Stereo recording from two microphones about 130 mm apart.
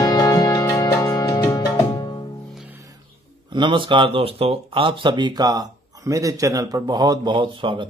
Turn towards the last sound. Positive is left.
turn(degrees=-40)  # may be behind; listen again after turning